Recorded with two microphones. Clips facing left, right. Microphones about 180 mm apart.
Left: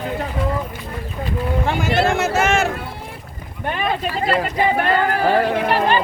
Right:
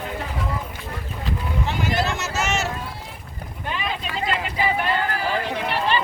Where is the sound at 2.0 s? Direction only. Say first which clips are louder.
Left 8 dB; 55° left (ahead or behind).